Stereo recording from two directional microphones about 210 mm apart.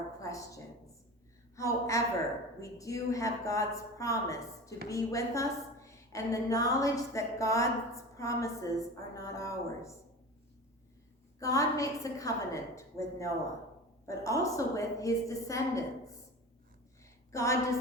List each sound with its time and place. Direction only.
0.2 s a woman's voice: 15° left (ahead or behind)
11.3 s a woman's voice: 15° left (ahead or behind)
17.3 s a woman's voice: 15° left (ahead or behind)